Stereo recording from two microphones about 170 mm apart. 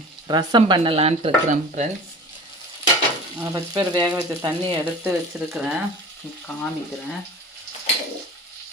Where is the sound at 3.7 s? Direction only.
25° right (ahead or behind).